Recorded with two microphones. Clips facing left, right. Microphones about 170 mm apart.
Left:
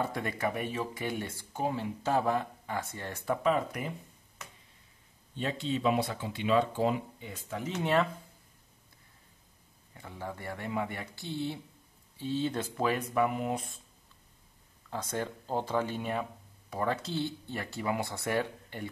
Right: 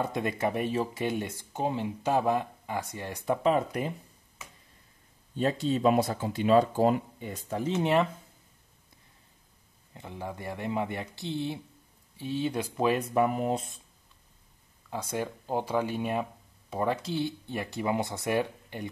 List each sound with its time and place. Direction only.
0.0 s speech: 20° right (ahead or behind)
3.4 s speech: 30° right (ahead or behind)
5.3 s speech: 40° right (ahead or behind)
7.7 s speech: 20° right (ahead or behind)
9.9 s speech: 20° right (ahead or behind)
13.1 s speech: 35° right (ahead or behind)
14.9 s speech: 10° right (ahead or behind)